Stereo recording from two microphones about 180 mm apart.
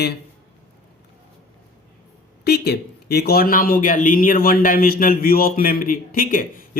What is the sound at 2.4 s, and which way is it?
A man's voice, 60° left (ahead or behind).